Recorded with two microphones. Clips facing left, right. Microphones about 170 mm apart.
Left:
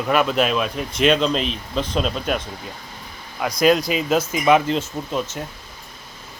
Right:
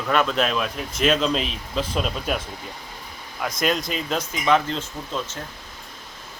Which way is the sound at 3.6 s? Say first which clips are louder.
Left 8 dB; centre (ahead or behind).